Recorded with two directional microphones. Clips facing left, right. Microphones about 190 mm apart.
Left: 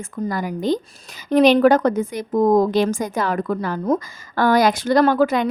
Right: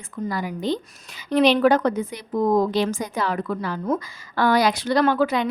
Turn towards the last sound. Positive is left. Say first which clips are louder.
# left 4 dB
turn(degrees=45)  # may be behind; listen again after turning